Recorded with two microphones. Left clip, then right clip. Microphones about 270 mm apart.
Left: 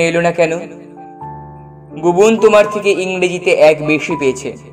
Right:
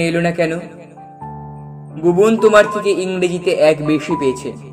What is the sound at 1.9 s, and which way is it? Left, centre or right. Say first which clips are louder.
Speech: left 3 dB; centre.